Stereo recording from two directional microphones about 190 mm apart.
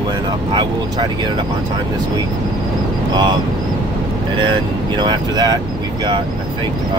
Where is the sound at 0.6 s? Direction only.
25° right (ahead or behind).